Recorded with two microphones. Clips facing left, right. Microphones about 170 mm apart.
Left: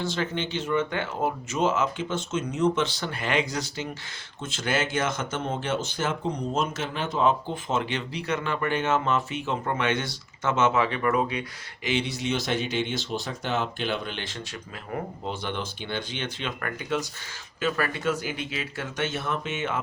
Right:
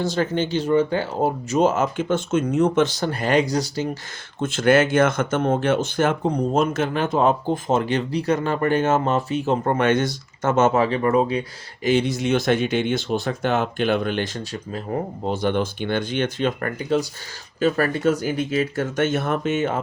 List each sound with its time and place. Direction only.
0.0 s speech: 40° right (ahead or behind)
4.4 s speech: 55° right (ahead or behind)